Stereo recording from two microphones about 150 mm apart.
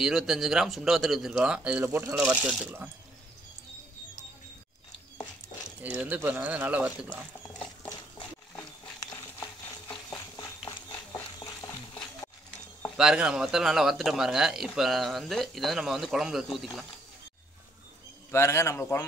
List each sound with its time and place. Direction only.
0.0 s speech: centre (ahead or behind)
5.8 s speech: 10° right (ahead or behind)
9.0 s a sound: 25° left (ahead or behind)
12.9 s speech: 5° right (ahead or behind)
18.3 s a man's voice: 20° left (ahead or behind)